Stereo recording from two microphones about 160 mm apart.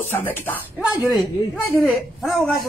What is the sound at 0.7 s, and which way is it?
A man's voice, 5° right (ahead or behind).